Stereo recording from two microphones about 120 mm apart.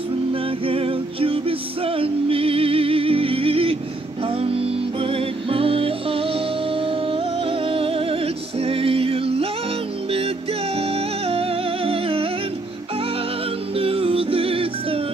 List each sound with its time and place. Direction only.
0.3 s music: 50° right (ahead or behind)
10.8 s music: 55° right (ahead or behind)
13.7 s music: 50° right (ahead or behind)